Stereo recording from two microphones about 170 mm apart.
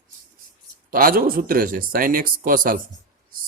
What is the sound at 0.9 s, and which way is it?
A man's voice, 60° right (ahead or behind).